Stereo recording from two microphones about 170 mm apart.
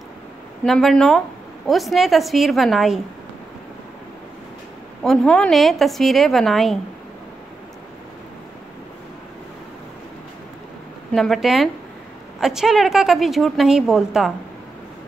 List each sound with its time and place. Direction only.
0.7 s a woman's voice: 5° left (ahead or behind)
5.0 s a woman's voice: 5° left (ahead or behind)
11.1 s a woman's voice: centre (ahead or behind)